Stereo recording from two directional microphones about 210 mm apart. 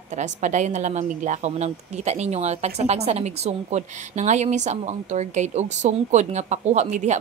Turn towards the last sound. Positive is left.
turn(degrees=-35)  # may be behind; listen again after turning